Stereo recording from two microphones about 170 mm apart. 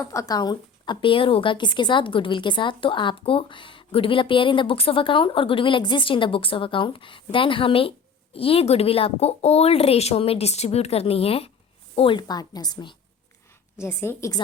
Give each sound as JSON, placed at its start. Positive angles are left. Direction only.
{"t": 0.0, "sound": "a woman's voice", "side_deg": 20}
{"t": 13.7, "sound": "a woman's voice", "side_deg": 15}